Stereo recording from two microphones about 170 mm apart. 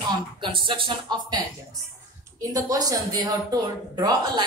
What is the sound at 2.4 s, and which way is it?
Speech, 20° right (ahead or behind).